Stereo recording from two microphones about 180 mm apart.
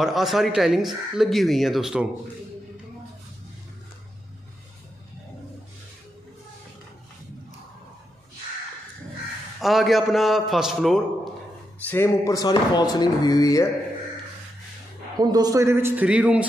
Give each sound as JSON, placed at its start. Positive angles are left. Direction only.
{"t": 0.0, "sound": "speech", "side_deg": 0}
{"t": 9.6, "sound": "speech", "side_deg": 0}
{"t": 11.9, "sound": "speech", "side_deg": 15}
{"t": 15.1, "sound": "a man's voice", "side_deg": -20}